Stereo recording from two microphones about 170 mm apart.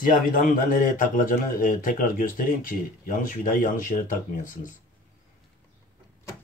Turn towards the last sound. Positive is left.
turn(degrees=50)  # may be behind; listen again after turning